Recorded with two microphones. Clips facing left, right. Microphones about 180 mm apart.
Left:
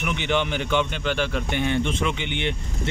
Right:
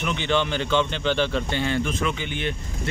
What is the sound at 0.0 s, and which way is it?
Speech, 15° left (ahead or behind).